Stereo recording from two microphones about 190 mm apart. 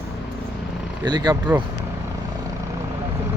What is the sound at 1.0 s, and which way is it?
Speech, 20° right (ahead or behind).